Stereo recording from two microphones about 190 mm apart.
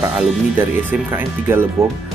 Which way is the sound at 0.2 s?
10° right (ahead or behind).